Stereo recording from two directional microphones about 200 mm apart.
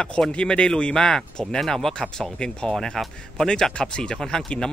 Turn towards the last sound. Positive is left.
turn(degrees=5)  # may be behind; listen again after turning